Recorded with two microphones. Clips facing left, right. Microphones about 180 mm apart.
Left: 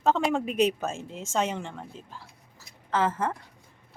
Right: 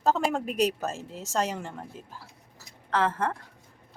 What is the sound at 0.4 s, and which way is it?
Speech, 40° right (ahead or behind).